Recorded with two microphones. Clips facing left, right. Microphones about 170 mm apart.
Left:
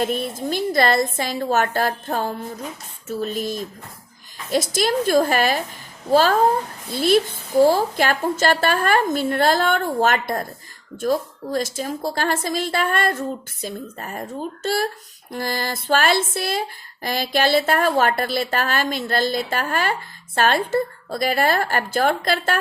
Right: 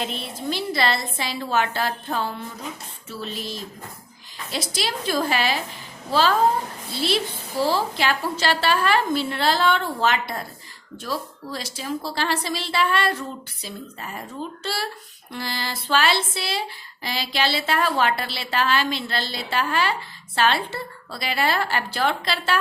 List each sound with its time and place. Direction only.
0.0 s speech: 45° left (ahead or behind)